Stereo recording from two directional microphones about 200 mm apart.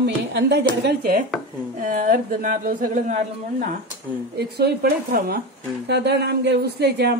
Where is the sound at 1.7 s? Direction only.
40° right (ahead or behind).